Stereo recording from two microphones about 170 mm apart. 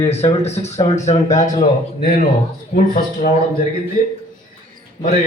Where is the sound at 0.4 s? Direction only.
40° left (ahead or behind).